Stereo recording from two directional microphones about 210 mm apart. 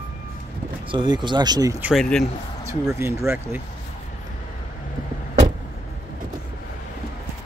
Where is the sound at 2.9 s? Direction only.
10° right (ahead or behind).